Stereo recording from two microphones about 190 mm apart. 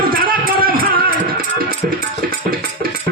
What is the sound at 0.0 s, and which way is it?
Music, 50° right (ahead or behind).